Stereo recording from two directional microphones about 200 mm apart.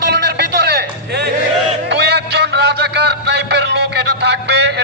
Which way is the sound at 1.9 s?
55° right (ahead or behind).